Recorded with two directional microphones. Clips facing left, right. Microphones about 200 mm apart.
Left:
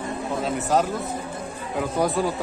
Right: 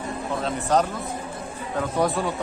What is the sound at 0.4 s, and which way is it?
Speech, 5° left (ahead or behind).